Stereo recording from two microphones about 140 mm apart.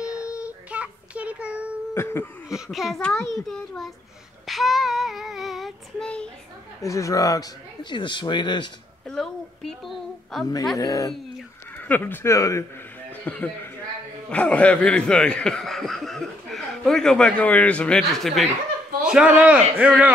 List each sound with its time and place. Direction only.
0.0 s child singing: 5° right (ahead or behind)
2.0 s a sound: 15° left (ahead or behind)
2.5 s speech: centre (ahead or behind)
4.5 s child singing: centre (ahead or behind)
6.8 s speech: 25° left (ahead or behind)
9.0 s a sound: 5° left (ahead or behind)
10.8 s speech: 25° left (ahead or behind)
11.9 s speech: 15° left (ahead or behind)
13.2 s speech: 10° left (ahead or behind)
19.1 s a man's voice: 10° right (ahead or behind)